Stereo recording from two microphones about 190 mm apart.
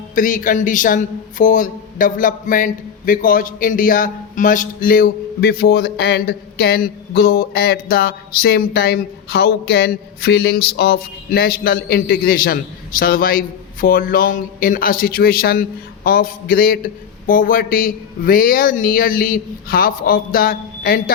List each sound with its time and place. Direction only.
0.1 s a man's voice: 45° left (ahead or behind)